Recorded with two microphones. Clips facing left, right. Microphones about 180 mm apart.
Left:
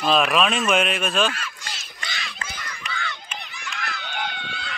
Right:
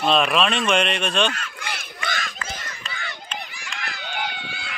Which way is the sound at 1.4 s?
60° right (ahead or behind).